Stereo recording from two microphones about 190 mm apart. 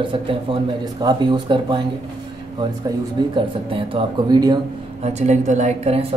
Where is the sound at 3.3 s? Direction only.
30° right (ahead or behind).